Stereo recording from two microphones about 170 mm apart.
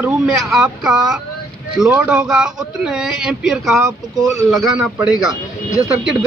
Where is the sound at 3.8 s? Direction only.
20° right (ahead or behind).